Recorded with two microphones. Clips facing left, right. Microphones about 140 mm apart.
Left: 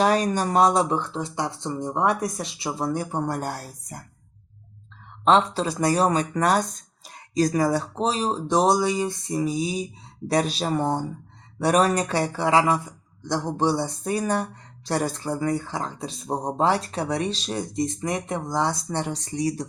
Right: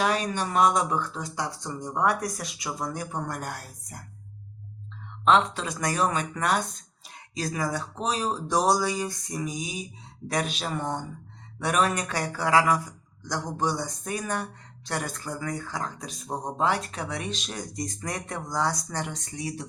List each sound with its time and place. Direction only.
0.0 s speech: 40° left (ahead or behind)
5.2 s speech: 35° left (ahead or behind)